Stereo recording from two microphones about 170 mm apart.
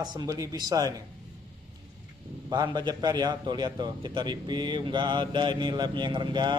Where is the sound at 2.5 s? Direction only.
25° right (ahead or behind).